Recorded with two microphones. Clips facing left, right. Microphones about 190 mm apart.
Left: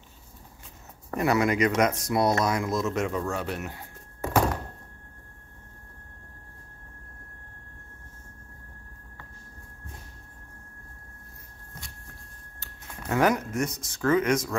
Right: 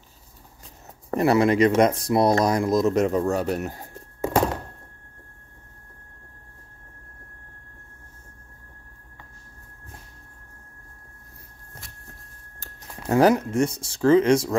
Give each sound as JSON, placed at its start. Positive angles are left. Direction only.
{"t": 1.1, "sound": "speech", "side_deg": -30}
{"t": 13.0, "sound": "speech", "side_deg": -30}